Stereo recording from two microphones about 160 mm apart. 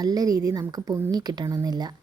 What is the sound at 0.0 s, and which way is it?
A woman's voice, 25° right (ahead or behind).